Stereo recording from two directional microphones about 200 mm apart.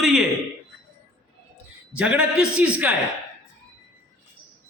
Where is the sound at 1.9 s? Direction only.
5° right (ahead or behind).